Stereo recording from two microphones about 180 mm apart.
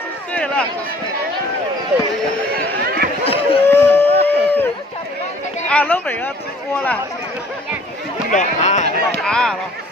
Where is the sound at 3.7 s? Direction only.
10° left (ahead or behind).